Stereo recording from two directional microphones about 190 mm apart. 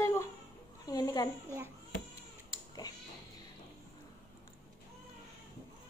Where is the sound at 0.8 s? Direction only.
20° left (ahead or behind).